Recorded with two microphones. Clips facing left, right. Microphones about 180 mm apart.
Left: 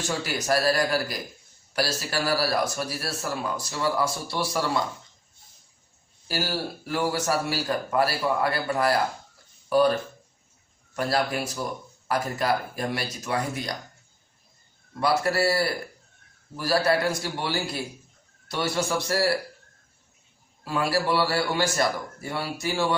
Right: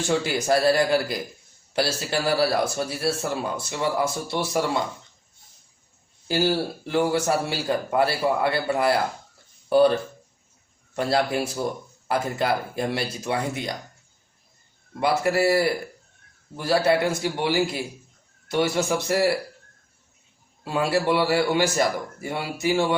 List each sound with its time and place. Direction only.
0.1 s speech: 25° right (ahead or behind)
6.2 s speech: 25° right (ahead or behind)
10.9 s speech: 25° right (ahead or behind)
15.0 s speech: 15° right (ahead or behind)
20.7 s speech: 20° right (ahead or behind)